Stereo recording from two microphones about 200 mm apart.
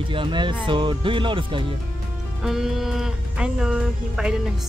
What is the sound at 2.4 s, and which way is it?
Speech, centre (ahead or behind).